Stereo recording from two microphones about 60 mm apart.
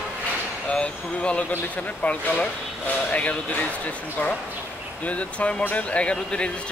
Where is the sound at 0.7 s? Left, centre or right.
Centre.